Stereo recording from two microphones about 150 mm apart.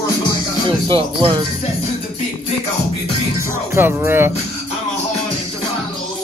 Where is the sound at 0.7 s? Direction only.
30° right (ahead or behind).